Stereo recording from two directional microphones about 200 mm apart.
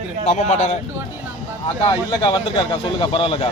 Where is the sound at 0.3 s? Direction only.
35° left (ahead or behind).